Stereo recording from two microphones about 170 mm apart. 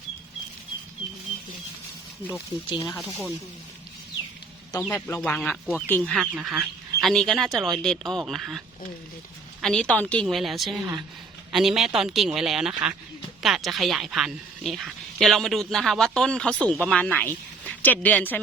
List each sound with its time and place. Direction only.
2.6 s speech: 30° left (ahead or behind)
3.1 s speech: 15° left (ahead or behind)
4.9 s speech: 15° left (ahead or behind)
6.3 s a woman's voice: 5° right (ahead or behind)